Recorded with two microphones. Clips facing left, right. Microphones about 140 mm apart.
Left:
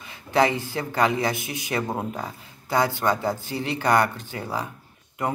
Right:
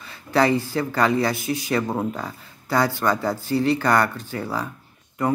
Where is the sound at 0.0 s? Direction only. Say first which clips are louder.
Right 1 dB; 20° left (ahead or behind).